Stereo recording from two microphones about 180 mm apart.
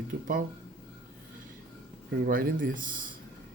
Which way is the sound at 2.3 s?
50° right (ahead or behind).